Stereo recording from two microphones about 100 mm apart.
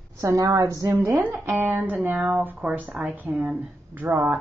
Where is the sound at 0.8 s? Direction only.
20° right (ahead or behind).